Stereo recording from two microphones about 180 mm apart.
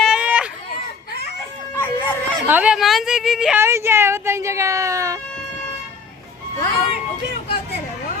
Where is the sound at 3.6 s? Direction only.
15° right (ahead or behind).